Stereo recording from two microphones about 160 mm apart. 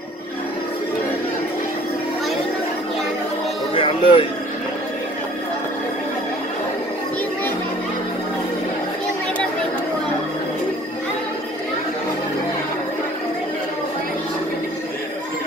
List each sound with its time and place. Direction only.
3.7 s speech: 30° left (ahead or behind)